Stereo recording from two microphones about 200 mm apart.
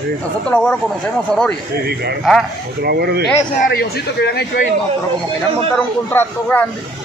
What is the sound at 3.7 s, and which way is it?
Speech, 55° left (ahead or behind).